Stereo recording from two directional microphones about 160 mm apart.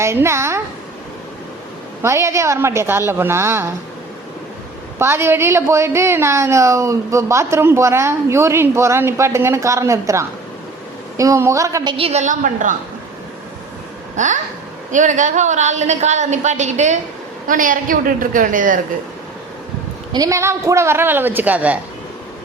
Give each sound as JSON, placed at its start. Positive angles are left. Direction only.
{"t": 0.0, "sound": "a woman's voice", "side_deg": -15}
{"t": 2.0, "sound": "a woman's voice", "side_deg": -15}
{"t": 4.9, "sound": "a woman's voice", "side_deg": -15}
{"t": 14.2, "sound": "a woman's voice", "side_deg": -50}
{"t": 20.1, "sound": "a woman's voice", "side_deg": -20}